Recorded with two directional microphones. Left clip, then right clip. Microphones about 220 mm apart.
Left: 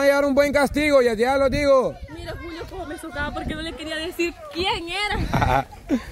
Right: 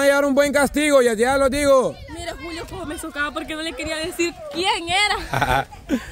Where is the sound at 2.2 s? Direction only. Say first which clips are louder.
Right 3 dB; 50° right (ahead or behind).